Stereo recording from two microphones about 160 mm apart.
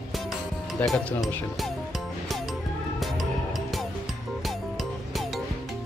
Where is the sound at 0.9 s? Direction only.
Centre (ahead or behind).